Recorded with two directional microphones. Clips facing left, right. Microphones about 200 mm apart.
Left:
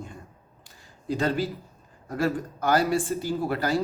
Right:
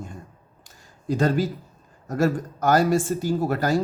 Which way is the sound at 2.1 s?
45° right (ahead or behind).